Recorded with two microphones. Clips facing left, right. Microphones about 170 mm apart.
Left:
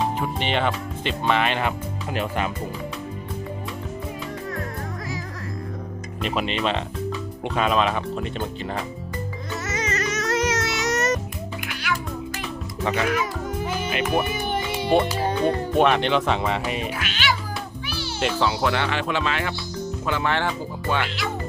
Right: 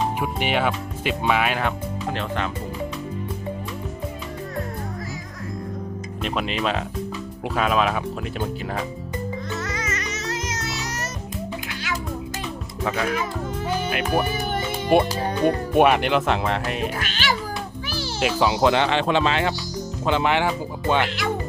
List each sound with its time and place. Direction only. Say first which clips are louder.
0.2 s speech: right 1 dB; 10° right (ahead or behind)
2.1 s speech: left 4 dB; 10° left (ahead or behind)
6.2 s speech: even; centre (ahead or behind)
9.6 s music: left 2 dB; 20° left (ahead or behind)
10.2 s music: left 6 dB; 70° left (ahead or behind)
12.8 s speech: left 1 dB; centre (ahead or behind)
15.2 s music: right 1 dB; 25° left (ahead or behind)
15.7 s speech: right 2 dB; 10° right (ahead or behind)
17.0 s cat: even; 40° right (ahead or behind)
18.2 s speech: right 3 dB; 10° right (ahead or behind)